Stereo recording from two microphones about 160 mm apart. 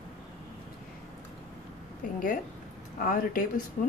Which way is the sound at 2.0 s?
55° left (ahead or behind).